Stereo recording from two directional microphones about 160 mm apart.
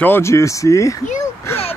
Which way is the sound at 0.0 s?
15° left (ahead or behind).